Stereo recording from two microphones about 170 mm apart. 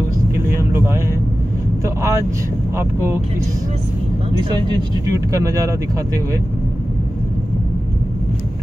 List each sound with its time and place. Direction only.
0.6 s vehicle: 15° right (ahead or behind)
2.7 s speech: 15° right (ahead or behind)
4.4 s speech: 25° right (ahead or behind)